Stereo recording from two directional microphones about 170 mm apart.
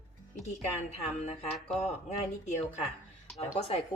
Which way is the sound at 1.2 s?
35° left (ahead or behind).